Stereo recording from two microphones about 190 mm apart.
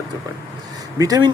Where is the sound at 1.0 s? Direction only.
20° right (ahead or behind).